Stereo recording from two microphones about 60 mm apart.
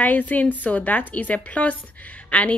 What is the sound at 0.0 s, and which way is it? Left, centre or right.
A woman's voice, left.